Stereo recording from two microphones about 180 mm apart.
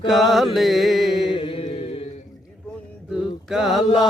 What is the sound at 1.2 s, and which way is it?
Mantra, 30° left (ahead or behind).